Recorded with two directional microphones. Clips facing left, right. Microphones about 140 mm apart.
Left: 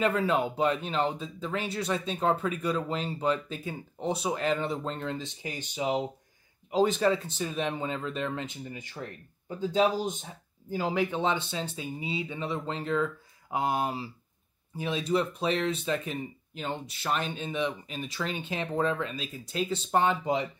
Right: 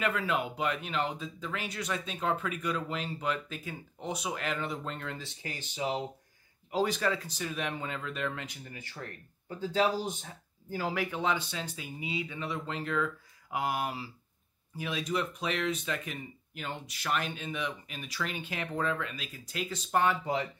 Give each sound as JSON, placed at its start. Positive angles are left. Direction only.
{"t": 0.0, "sound": "speech", "side_deg": 30}